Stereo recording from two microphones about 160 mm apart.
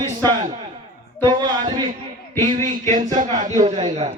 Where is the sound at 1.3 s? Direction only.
25° right (ahead or behind).